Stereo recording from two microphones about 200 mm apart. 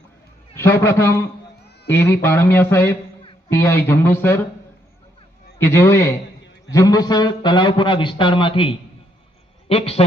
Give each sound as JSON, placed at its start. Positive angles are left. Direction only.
{"t": 0.5, "sound": "a man's voice", "side_deg": 15}
{"t": 5.5, "sound": "a man's voice", "side_deg": 10}